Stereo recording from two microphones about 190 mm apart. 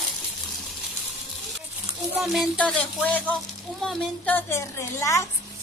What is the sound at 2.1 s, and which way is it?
Music, centre (ahead or behind).